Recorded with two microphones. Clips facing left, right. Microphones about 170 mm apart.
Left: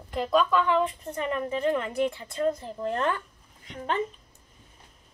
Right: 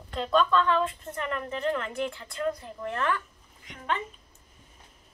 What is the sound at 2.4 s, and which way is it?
Speech, 25° left (ahead or behind).